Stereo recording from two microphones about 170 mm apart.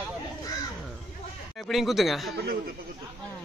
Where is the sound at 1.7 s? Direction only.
Centre (ahead or behind).